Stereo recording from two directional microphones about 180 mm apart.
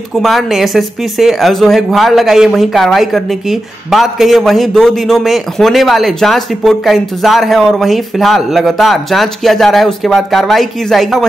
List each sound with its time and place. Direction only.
0.1 s speech: centre (ahead or behind)